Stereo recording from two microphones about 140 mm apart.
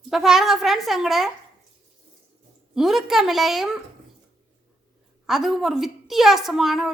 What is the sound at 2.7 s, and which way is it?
Speech, centre (ahead or behind).